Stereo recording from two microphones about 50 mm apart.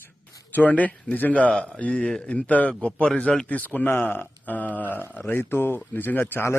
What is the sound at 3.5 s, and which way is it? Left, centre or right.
Speech, left.